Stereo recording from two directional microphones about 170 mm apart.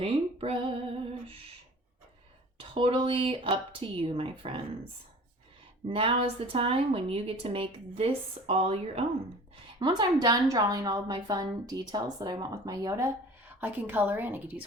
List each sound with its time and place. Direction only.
0.0 s a woman's voice: 35° right (ahead or behind)
2.6 s a woman's voice: 30° right (ahead or behind)
5.9 s a woman's voice: 35° right (ahead or behind)
9.8 s a woman's voice: 25° right (ahead or behind)